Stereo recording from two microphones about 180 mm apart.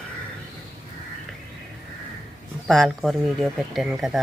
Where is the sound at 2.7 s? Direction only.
Centre (ahead or behind).